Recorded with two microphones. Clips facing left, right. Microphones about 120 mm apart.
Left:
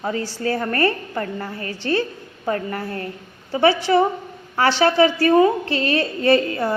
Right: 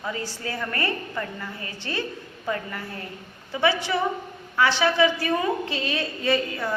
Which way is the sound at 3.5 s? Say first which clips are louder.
Left 7 dB; 35° left (ahead or behind).